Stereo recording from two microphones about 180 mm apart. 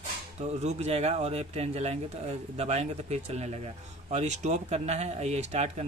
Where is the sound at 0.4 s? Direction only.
40° right (ahead or behind).